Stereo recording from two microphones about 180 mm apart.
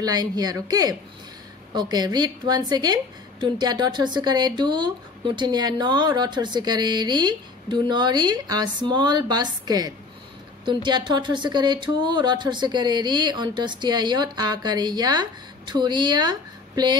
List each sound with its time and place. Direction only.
0.0 s a woman's voice: 20° right (ahead or behind)